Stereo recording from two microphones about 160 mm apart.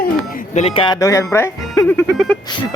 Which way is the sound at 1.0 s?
20° left (ahead or behind).